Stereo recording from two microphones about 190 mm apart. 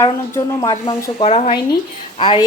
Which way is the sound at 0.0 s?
20° left (ahead or behind).